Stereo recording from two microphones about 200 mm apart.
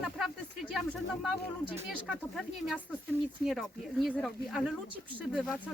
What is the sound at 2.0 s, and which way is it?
Speech, centre (ahead or behind).